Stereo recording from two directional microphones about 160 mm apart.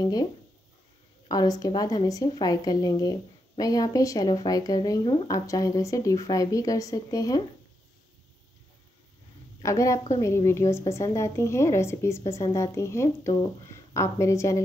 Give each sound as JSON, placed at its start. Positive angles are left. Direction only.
{"t": 0.0, "sound": "speech", "side_deg": 25}
{"t": 1.3, "sound": "speech", "side_deg": 25}
{"t": 9.6, "sound": "a woman's voice", "side_deg": 20}